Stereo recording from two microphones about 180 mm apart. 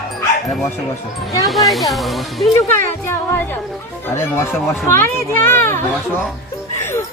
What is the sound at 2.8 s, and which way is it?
Speech, 15° left (ahead or behind).